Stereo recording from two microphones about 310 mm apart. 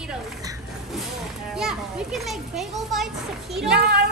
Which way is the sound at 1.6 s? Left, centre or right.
Centre.